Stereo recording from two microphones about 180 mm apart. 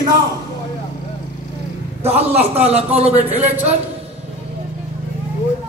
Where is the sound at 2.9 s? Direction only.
35° right (ahead or behind).